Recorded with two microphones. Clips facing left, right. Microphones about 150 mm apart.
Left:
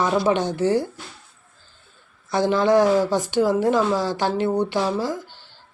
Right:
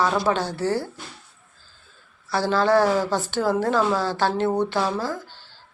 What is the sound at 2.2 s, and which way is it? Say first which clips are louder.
Speech: left 2 dB; 20° left (ahead or behind).